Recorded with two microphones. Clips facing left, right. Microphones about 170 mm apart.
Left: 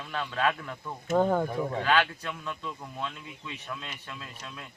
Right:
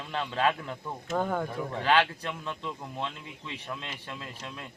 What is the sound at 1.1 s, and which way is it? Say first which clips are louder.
Speech: left 5 dB; 10° left (ahead or behind).